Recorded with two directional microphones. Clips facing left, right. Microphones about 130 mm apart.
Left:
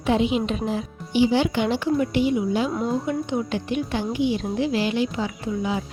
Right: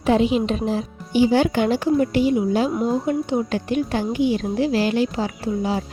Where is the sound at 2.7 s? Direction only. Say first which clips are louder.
Right 3 dB; 10° right (ahead or behind).